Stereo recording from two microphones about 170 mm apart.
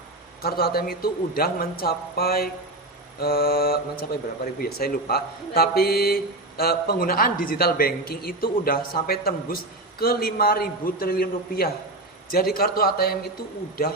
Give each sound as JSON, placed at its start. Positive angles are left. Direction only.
{"t": 0.4, "sound": "a man's voice", "side_deg": 65}